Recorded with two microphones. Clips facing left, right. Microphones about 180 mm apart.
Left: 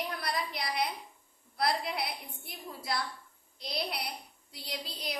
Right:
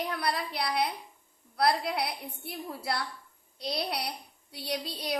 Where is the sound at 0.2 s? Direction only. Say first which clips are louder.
Right 4 dB; 65° right (ahead or behind).